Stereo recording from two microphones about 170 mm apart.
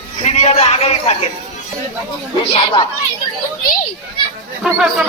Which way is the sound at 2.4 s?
30° left (ahead or behind).